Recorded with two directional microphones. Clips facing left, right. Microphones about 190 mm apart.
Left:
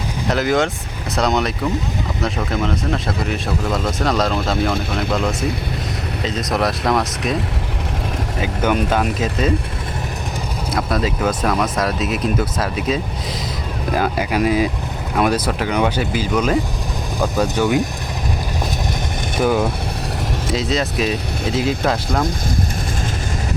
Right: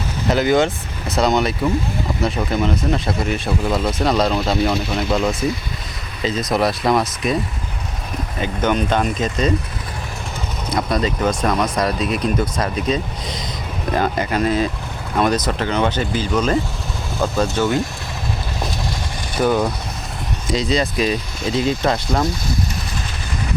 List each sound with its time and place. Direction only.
0.3 s speech: centre (ahead or behind)
8.4 s speech: 5° left (ahead or behind)
10.7 s speech: centre (ahead or behind)
19.4 s speech: 5° left (ahead or behind)